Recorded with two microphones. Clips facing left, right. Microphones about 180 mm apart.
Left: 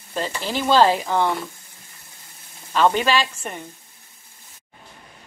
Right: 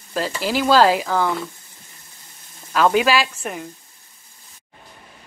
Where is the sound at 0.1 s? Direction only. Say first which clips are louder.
Right 3 dB; 5° right (ahead or behind).